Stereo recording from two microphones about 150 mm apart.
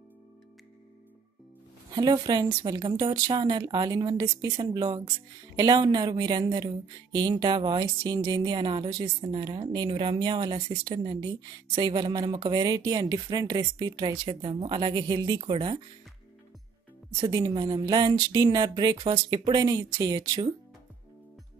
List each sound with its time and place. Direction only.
1.9 s speech: 30° right (ahead or behind)
17.2 s speech: 25° right (ahead or behind)